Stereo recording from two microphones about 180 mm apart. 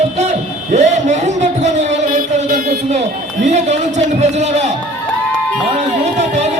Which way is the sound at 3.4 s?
40° right (ahead or behind).